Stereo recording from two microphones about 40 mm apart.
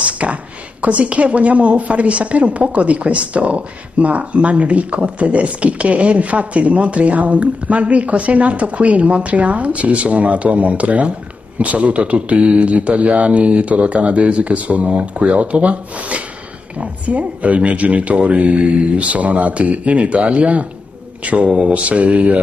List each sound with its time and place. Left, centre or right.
0.0 s speech: right